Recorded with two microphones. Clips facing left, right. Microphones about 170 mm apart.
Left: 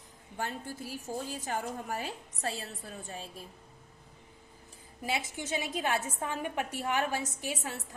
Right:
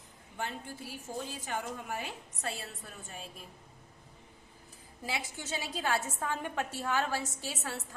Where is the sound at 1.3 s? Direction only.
40° left (ahead or behind).